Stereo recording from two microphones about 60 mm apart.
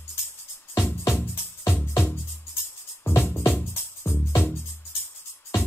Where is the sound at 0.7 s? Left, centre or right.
Left.